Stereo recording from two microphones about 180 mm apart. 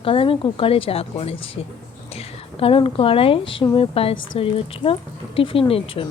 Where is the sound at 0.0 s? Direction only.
30° left (ahead or behind).